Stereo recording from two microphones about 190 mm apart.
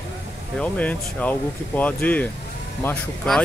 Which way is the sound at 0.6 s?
5° left (ahead or behind).